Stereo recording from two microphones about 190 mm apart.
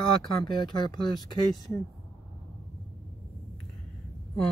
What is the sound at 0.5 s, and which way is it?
Speech, 25° left (ahead or behind).